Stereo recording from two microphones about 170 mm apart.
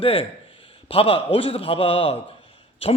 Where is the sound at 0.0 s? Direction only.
35° left (ahead or behind).